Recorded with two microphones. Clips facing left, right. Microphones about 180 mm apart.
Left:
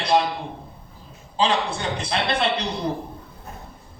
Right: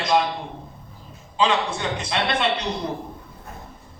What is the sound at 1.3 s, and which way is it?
A man's voice, 35° left (ahead or behind).